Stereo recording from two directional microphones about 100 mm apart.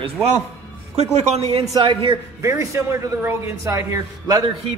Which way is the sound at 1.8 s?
50° right (ahead or behind).